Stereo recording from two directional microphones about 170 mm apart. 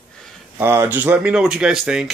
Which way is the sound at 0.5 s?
15° right (ahead or behind).